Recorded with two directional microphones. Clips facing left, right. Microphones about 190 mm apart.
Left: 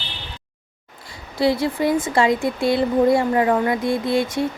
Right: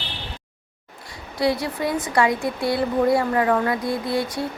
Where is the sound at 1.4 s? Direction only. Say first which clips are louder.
Left 3 dB; 30° left (ahead or behind).